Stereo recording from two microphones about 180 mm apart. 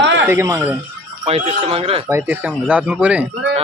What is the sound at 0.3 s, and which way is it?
Speech, 15° right (ahead or behind).